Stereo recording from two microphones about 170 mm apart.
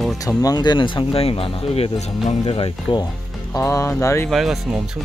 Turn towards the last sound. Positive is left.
turn(degrees=0)  # may be behind; listen again after turning